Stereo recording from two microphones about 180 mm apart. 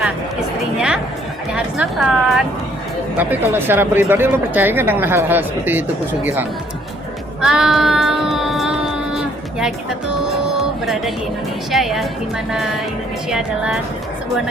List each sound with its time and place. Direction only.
0.0 s a sound: 5° right (ahead or behind)
1.5 s a woman's voice: 5° right (ahead or behind)
7.4 s child singing: centre (ahead or behind)
10.5 s music: centre (ahead or behind)
11.7 s a woman's voice: centre (ahead or behind)